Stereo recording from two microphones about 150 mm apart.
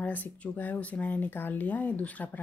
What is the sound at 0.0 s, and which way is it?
Speech, 10° left (ahead or behind).